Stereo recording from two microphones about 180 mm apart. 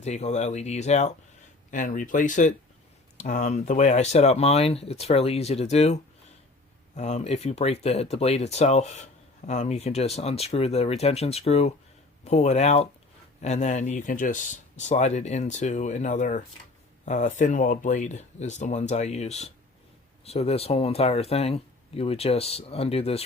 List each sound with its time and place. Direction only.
0.0 s speech: 40° left (ahead or behind)